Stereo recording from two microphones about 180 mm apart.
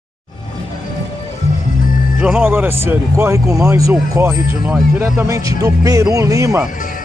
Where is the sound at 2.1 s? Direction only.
5° right (ahead or behind).